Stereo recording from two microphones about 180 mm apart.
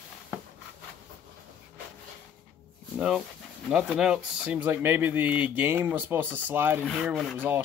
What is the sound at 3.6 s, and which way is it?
Speech, centre (ahead or behind).